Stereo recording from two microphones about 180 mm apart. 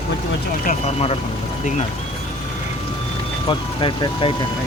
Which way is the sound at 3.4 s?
25° left (ahead or behind).